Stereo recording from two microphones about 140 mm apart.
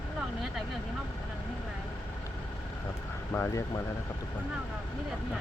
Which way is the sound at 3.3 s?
15° left (ahead or behind).